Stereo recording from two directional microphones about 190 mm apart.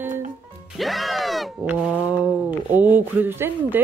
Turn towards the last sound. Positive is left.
turn(degrees=-10)  # may be behind; listen again after turning